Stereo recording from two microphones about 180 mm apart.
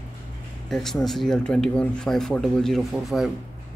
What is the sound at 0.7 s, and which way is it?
A man's voice, centre (ahead or behind).